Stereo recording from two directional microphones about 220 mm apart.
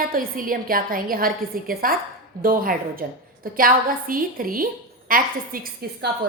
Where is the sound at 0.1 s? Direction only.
40° right (ahead or behind).